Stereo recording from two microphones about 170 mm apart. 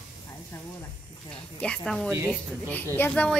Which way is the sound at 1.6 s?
5° left (ahead or behind).